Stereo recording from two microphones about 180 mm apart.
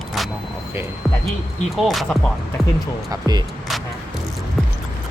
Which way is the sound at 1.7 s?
Centre (ahead or behind).